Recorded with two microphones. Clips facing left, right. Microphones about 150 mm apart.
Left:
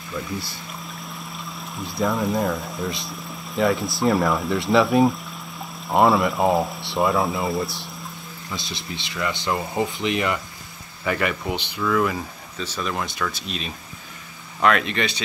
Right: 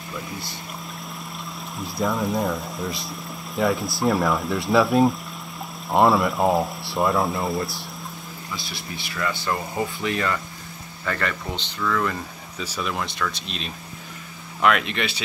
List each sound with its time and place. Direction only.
1.3 s speech: centre (ahead or behind)
8.6 s speech: 20° left (ahead or behind); by 12.3 s 5° left (ahead or behind)
12.5 s speech: 10° right (ahead or behind)